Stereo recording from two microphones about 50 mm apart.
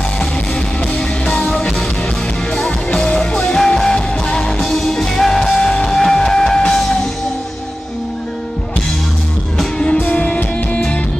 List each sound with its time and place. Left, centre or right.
0.9 s music: centre
9.9 s music: left